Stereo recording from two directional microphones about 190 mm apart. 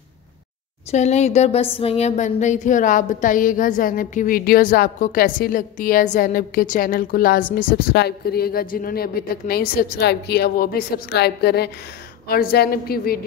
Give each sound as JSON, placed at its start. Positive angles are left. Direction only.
{"t": 0.9, "sound": "speech", "side_deg": 35}